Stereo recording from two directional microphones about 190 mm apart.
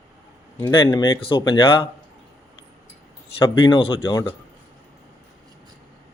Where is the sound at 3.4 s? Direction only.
30° left (ahead or behind).